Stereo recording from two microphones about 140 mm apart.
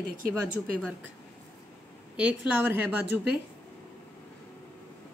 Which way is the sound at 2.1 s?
10° right (ahead or behind).